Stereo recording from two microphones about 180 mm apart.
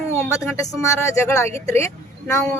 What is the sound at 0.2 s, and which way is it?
Speech, 15° left (ahead or behind).